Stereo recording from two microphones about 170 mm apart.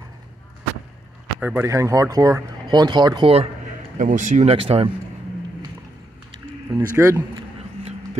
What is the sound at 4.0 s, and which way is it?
Speech, 50° right (ahead or behind).